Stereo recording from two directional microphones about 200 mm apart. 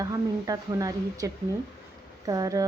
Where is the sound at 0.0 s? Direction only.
15° right (ahead or behind).